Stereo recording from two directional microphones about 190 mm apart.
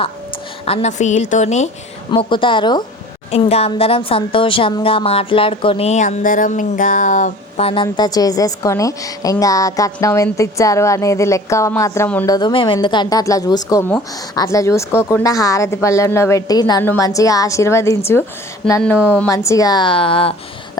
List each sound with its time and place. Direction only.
0.7 s a woman's voice: 35° left (ahead or behind)
2.0 s a woman's voice: 25° left (ahead or behind)
12.3 s a woman's voice: 25° left (ahead or behind)